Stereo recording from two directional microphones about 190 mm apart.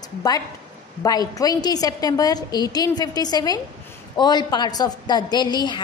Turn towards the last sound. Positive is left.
turn(degrees=25)  # may be behind; listen again after turning